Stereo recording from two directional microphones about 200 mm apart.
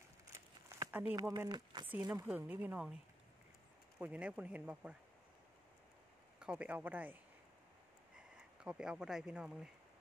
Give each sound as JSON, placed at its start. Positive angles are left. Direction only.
{"t": 0.3, "sound": "a sound", "side_deg": -15}
{"t": 1.1, "sound": "speech", "side_deg": -15}
{"t": 4.0, "sound": "speech", "side_deg": -5}
{"t": 6.4, "sound": "speech", "side_deg": -5}
{"t": 8.4, "sound": "speech", "side_deg": -5}